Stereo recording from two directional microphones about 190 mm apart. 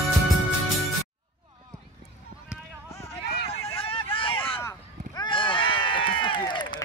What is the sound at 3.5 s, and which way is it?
Vehicle, 30° left (ahead or behind).